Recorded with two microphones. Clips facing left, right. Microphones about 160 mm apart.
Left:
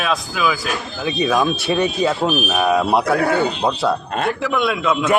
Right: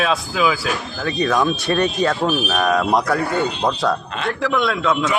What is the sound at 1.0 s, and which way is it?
Speech, 10° left (ahead or behind).